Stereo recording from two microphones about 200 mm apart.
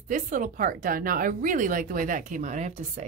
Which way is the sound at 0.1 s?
40° right (ahead or behind).